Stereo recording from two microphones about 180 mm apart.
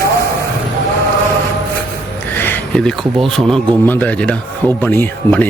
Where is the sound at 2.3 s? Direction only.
10° left (ahead or behind).